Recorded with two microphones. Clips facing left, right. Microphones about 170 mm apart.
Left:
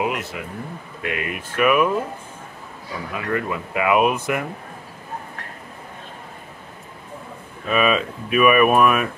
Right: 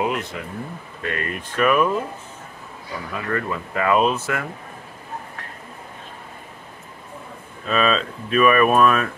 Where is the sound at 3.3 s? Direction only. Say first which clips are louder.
Left 1 dB; 10° left (ahead or behind).